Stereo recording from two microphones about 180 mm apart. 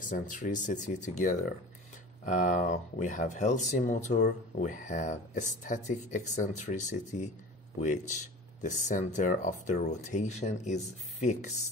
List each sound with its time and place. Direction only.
0.0 s speech: 45° left (ahead or behind)